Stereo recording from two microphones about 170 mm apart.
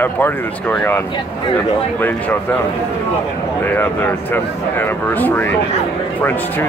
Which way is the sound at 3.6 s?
10° left (ahead or behind).